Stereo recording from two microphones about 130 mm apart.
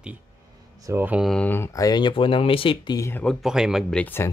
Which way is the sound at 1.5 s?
20° left (ahead or behind).